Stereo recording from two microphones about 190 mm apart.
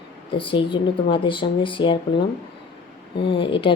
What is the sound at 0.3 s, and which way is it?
Speech, 25° left (ahead or behind).